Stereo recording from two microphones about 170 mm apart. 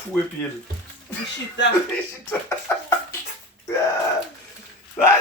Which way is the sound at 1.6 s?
90° left.